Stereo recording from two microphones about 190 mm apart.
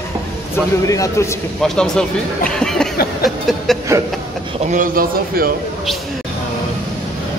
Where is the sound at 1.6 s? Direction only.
5° left (ahead or behind).